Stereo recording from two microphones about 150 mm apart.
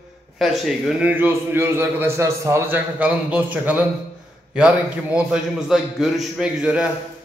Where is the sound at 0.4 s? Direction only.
Centre (ahead or behind).